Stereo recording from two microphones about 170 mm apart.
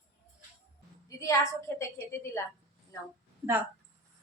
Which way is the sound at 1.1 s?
20° left (ahead or behind).